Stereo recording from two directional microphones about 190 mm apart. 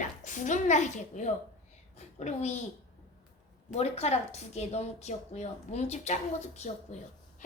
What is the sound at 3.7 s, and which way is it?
A woman's voice, 35° left (ahead or behind).